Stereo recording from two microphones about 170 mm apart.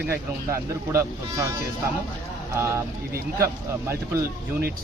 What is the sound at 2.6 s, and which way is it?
Speech, 15° right (ahead or behind).